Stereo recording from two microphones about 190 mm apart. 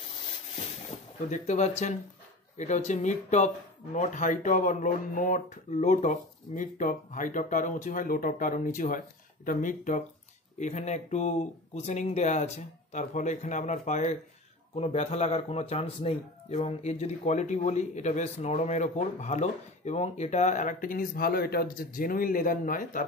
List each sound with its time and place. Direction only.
0.8 s a man's voice: 35° left (ahead or behind)